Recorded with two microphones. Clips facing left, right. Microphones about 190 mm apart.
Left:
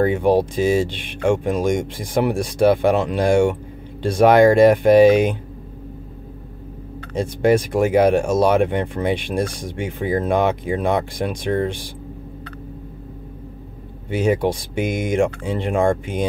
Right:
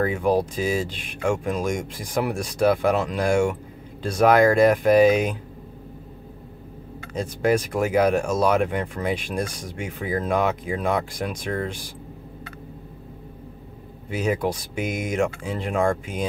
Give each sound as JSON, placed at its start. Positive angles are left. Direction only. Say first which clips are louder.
{"t": 0.0, "sound": "speech", "louder": "left 5 dB", "side_deg": 30}
{"t": 7.2, "sound": "speech", "louder": "left 5 dB", "side_deg": 30}
{"t": 14.1, "sound": "speech", "louder": "left 5 dB", "side_deg": 30}